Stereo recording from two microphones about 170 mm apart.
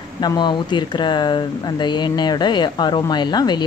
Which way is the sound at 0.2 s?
25° left (ahead or behind).